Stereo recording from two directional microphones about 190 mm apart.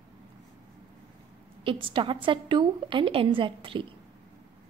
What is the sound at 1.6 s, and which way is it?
A woman's voice, 25° right (ahead or behind).